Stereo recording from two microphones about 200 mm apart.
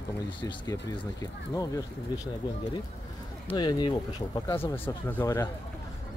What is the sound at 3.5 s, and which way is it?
Speech, 20° left (ahead or behind).